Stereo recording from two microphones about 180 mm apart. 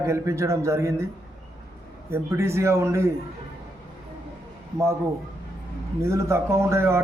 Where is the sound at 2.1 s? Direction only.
15° right (ahead or behind).